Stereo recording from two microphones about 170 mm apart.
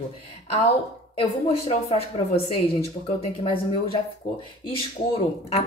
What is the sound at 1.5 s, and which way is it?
Speech, 35° left (ahead or behind).